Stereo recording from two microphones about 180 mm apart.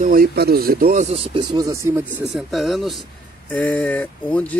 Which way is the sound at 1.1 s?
30° right (ahead or behind).